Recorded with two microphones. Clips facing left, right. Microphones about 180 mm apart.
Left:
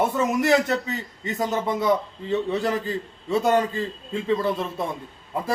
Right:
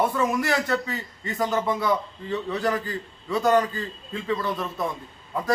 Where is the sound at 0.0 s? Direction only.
20° left (ahead or behind).